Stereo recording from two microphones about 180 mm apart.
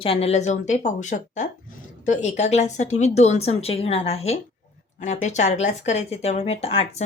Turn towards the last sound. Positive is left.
turn(degrees=35)  # may be behind; listen again after turning